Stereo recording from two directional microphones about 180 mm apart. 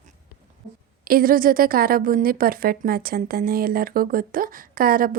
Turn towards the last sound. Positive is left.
turn(degrees=-55)  # may be behind; listen again after turning